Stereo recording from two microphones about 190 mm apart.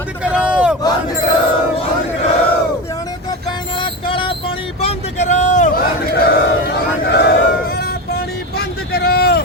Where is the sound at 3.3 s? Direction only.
25° left (ahead or behind); by 5.8 s 40° left (ahead or behind).